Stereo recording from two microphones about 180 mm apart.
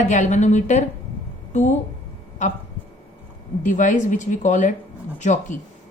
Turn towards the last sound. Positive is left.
turn(degrees=40)  # may be behind; listen again after turning